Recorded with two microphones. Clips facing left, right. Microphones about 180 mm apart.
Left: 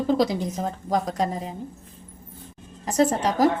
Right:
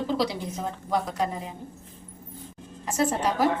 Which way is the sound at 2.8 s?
40° left (ahead or behind).